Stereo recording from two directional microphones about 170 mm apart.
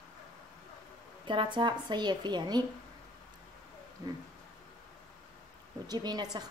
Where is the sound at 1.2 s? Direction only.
30° right (ahead or behind).